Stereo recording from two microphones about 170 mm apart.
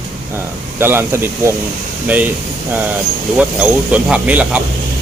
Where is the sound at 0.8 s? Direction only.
15° right (ahead or behind).